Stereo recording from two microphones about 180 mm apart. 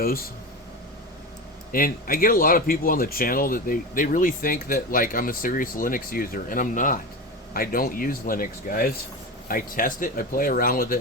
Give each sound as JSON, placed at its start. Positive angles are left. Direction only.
{"t": 1.7, "sound": "speech", "side_deg": 55}